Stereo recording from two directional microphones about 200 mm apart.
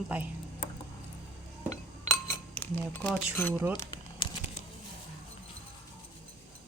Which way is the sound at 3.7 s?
20° left (ahead or behind).